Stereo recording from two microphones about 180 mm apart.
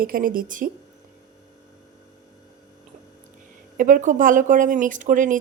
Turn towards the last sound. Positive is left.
turn(degrees=-45)  # may be behind; listen again after turning